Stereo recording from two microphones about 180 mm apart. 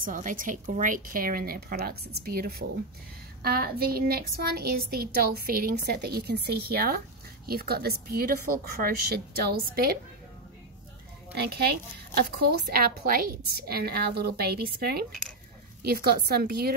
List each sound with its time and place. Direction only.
0.0 s a woman's voice: 45° right (ahead or behind)
11.3 s speech: 65° right (ahead or behind)